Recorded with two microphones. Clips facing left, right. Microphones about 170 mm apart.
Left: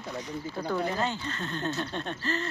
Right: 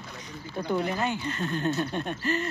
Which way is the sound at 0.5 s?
15° right (ahead or behind).